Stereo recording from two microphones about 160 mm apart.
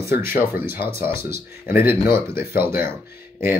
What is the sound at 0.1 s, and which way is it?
Speech, 65° left (ahead or behind).